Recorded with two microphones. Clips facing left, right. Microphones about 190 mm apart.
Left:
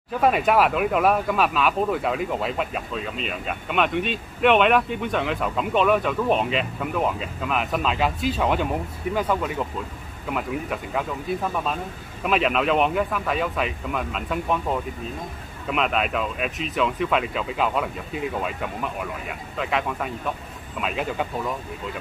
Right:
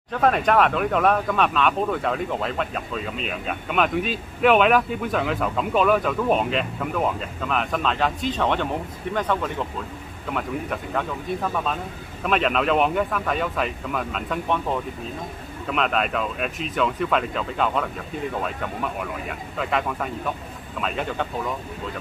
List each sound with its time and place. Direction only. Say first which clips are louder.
0.1 s speech: even; 5° left (ahead or behind)